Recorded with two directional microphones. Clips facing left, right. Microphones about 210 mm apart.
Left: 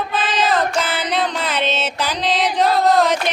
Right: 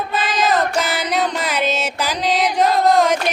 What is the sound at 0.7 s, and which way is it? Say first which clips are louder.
Music: right 1 dB; 10° right (ahead or behind).